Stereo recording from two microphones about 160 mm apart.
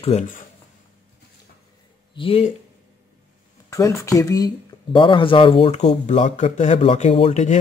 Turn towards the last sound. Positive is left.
turn(degrees=45)  # may be behind; listen again after turning